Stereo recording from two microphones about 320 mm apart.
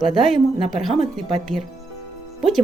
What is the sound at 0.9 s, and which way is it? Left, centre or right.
Speech, centre.